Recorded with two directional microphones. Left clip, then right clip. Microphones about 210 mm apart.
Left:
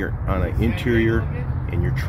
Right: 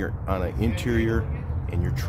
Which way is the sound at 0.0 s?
5° right (ahead or behind).